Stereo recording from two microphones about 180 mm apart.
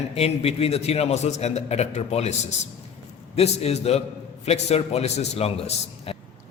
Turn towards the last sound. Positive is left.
turn(degrees=35)  # may be behind; listen again after turning